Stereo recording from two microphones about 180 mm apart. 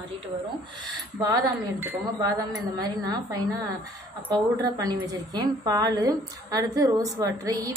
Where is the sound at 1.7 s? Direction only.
15° right (ahead or behind).